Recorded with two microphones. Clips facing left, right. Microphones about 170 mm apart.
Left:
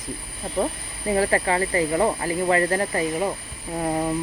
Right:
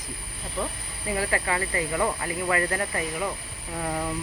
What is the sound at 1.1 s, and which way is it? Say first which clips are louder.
Speech: left 6 dB; 30° left (ahead or behind).